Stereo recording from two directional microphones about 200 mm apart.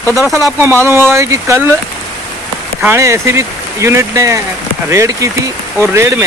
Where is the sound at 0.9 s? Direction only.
10° right (ahead or behind).